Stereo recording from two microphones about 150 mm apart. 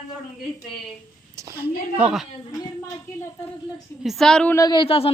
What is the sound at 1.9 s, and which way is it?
Speech, 5° right (ahead or behind).